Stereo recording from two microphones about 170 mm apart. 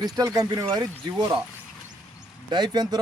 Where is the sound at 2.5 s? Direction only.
25° right (ahead or behind).